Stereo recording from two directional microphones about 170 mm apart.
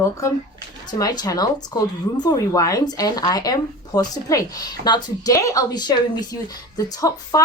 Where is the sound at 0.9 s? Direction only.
20° left (ahead or behind).